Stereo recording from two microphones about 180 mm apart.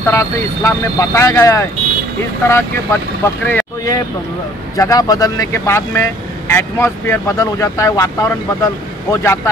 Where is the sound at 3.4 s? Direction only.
10° left (ahead or behind).